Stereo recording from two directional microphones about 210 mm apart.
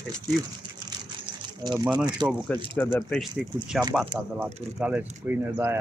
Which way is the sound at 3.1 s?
Centre (ahead or behind).